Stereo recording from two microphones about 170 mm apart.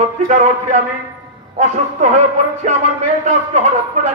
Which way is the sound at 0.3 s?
45° right (ahead or behind).